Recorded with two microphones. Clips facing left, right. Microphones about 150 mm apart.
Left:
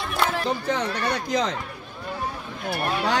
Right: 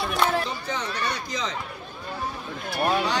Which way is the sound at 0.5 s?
60° left (ahead or behind).